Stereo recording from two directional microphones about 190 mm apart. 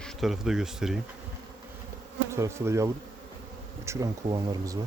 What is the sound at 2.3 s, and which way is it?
Speech, 15° right (ahead or behind).